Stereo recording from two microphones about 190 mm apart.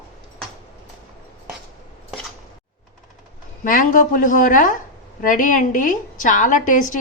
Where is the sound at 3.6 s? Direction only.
45° left (ahead or behind).